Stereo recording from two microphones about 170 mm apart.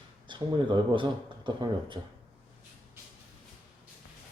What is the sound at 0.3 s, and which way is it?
Speech, 30° right (ahead or behind).